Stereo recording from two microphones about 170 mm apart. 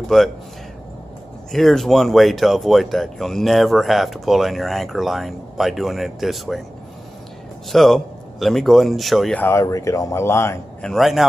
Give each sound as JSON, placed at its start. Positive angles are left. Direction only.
{"t": 0.1, "sound": "speech", "side_deg": 0}
{"t": 1.5, "sound": "speech", "side_deg": 0}
{"t": 7.7, "sound": "speech", "side_deg": 0}
{"t": 9.4, "sound": "speech", "side_deg": 15}
{"t": 10.8, "sound": "speech", "side_deg": 0}